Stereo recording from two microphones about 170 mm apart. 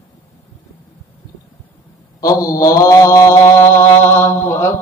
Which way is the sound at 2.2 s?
20° left (ahead or behind).